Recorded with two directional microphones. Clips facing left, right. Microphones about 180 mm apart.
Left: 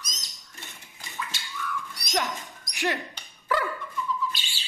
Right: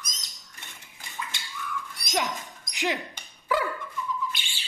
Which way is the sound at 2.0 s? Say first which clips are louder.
Even; 15° right (ahead or behind).